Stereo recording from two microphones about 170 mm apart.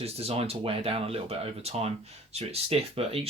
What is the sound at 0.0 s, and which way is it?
Speech, 35° right (ahead or behind).